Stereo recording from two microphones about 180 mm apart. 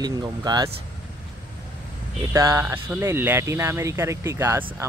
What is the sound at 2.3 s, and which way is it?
Speech, 20° right (ahead or behind).